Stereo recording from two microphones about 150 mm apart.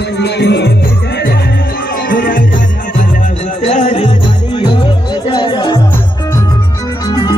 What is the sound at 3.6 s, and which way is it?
Music, 50° left (ahead or behind).